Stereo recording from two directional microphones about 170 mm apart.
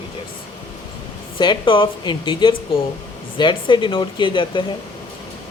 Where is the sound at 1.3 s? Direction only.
30° left (ahead or behind).